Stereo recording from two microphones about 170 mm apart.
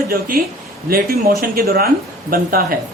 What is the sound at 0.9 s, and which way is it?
A man's voice, 60° right (ahead or behind).